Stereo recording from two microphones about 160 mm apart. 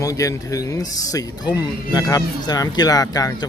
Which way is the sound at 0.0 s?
20° left (ahead or behind).